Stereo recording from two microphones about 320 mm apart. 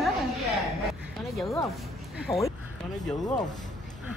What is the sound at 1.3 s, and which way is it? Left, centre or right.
Speech, centre.